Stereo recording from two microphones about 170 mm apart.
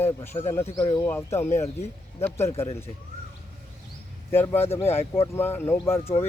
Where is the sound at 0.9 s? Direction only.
15° left (ahead or behind).